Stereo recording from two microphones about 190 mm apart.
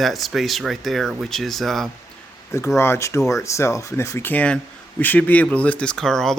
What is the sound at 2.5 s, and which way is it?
Speech, 15° left (ahead or behind).